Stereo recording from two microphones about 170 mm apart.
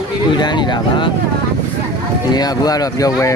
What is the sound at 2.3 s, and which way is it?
A man's voice, 25° left (ahead or behind).